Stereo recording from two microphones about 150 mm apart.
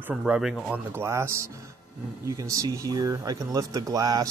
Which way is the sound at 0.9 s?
15° right (ahead or behind).